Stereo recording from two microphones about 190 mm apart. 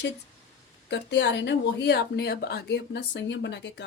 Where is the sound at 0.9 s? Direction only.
65° left (ahead or behind).